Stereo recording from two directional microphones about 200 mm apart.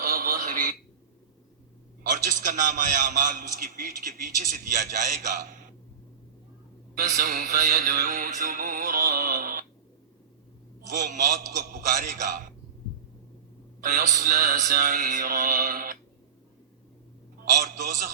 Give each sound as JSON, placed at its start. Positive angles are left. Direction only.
{"t": 0.0, "sound": "a sound", "side_deg": -45}
{"t": 2.0, "sound": "a man's voice", "side_deg": -40}
{"t": 6.9, "sound": "mantra", "side_deg": -40}
{"t": 10.8, "sound": "a man's voice", "side_deg": -40}
{"t": 13.8, "sound": "mantra", "side_deg": -40}
{"t": 17.6, "sound": "mantra", "side_deg": -45}